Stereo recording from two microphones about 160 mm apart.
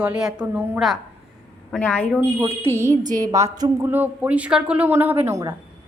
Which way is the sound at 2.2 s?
15° right (ahead or behind).